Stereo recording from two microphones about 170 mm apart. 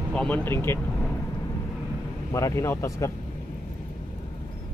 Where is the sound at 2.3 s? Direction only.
15° left (ahead or behind).